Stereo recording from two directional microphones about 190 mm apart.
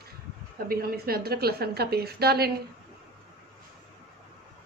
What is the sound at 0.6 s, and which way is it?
A woman's voice, 55° right (ahead or behind).